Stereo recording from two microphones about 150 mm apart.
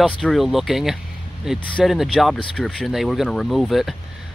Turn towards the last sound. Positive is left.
turn(degrees=0)  # may be behind; listen again after turning